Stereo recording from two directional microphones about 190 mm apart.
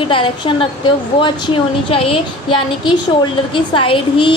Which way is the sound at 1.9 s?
30° left (ahead or behind).